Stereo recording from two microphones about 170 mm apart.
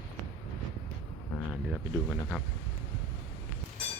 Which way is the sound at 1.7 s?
5° left (ahead or behind).